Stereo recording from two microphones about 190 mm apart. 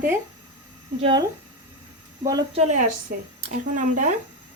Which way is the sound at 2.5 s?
40° right (ahead or behind).